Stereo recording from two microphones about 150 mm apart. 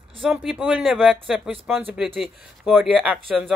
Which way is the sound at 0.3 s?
5° right (ahead or behind).